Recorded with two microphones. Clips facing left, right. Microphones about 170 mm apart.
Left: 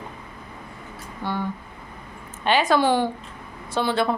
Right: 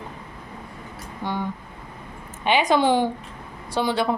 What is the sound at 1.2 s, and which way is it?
A woman's voice, 15° right (ahead or behind).